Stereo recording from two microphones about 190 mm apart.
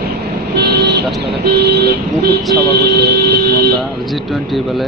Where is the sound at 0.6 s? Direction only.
60° right (ahead or behind).